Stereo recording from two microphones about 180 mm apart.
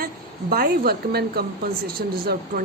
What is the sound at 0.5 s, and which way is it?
Speech, 55° right (ahead or behind).